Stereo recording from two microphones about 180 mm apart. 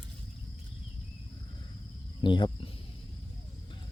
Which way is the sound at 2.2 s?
25° left (ahead or behind).